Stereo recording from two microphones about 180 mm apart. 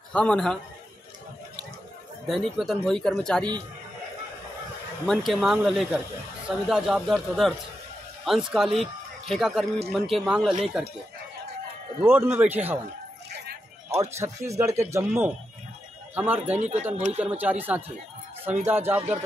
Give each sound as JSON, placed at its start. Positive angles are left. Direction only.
{"t": 0.1, "sound": "speech", "side_deg": 5}
{"t": 2.2, "sound": "speech", "side_deg": 0}
{"t": 5.0, "sound": "speech", "side_deg": 0}
{"t": 12.0, "sound": "speech", "side_deg": -10}
{"t": 13.8, "sound": "speech", "side_deg": -15}
{"t": 16.5, "sound": "speech", "side_deg": -40}
{"t": 17.2, "sound": "speech", "side_deg": -10}